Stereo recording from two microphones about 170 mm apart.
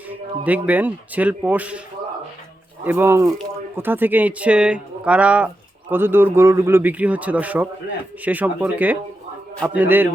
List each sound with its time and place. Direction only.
0.4 s a man's voice: 10° right (ahead or behind)
2.8 s a man's voice: 10° right (ahead or behind)